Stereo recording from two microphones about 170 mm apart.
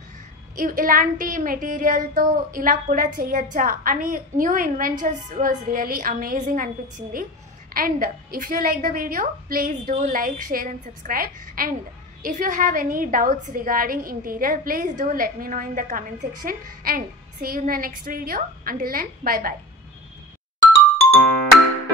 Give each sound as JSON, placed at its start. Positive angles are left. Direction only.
{"t": 0.6, "sound": "a woman's voice", "side_deg": -55}